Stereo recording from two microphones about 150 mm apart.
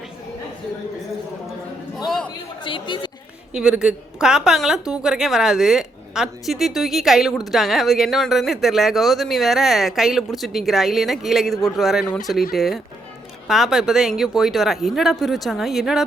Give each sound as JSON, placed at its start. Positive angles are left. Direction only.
{"t": 2.0, "sound": "a sound", "side_deg": 5}
{"t": 2.6, "sound": "a woman's voice", "side_deg": 35}
{"t": 3.5, "sound": "a woman's voice", "side_deg": -5}